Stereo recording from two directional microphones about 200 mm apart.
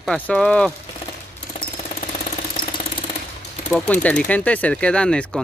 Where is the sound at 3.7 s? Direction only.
5° left (ahead or behind).